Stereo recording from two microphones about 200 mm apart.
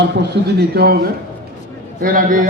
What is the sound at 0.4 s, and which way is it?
A man's voice, 60° right (ahead or behind).